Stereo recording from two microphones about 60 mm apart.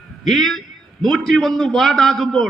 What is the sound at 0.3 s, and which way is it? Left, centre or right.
A man's voice, centre.